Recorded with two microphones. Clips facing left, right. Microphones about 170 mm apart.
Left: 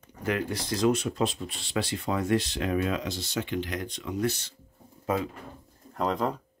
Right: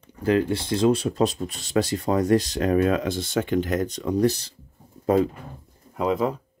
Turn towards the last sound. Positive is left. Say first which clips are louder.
# right 5 dB
turn(degrees=-5)  # may be behind; listen again after turning